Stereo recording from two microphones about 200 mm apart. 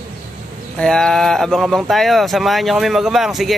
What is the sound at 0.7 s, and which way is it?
Speech, 5° left (ahead or behind).